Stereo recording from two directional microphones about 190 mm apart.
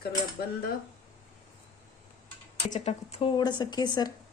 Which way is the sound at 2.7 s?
35° left (ahead or behind).